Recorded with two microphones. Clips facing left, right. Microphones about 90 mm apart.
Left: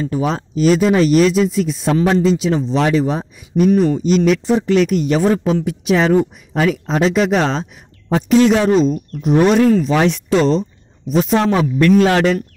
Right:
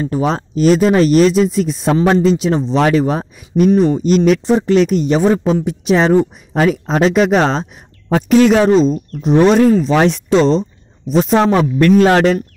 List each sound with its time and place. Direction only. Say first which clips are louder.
0.0 s speech: right 2 dB; 40° right (ahead or behind)
2.9 s speech: right 2 dB; 55° right (ahead or behind)
3.7 s speech: right 2 dB; 35° right (ahead or behind)
4.0 s speech: right 2 dB; 45° right (ahead or behind)
8.1 s speech: right 2 dB; 55° right (ahead or behind)
8.6 s speech: right 2 dB; 30° right (ahead or behind)